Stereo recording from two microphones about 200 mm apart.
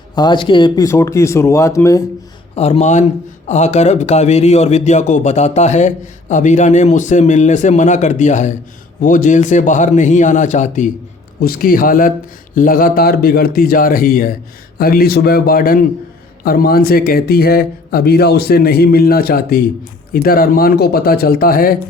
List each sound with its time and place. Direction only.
0.2 s speech: 25° left (ahead or behind)
2.6 s speech: 30° left (ahead or behind)